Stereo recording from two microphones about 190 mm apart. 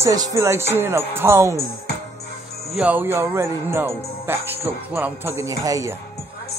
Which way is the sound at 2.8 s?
10° right (ahead or behind).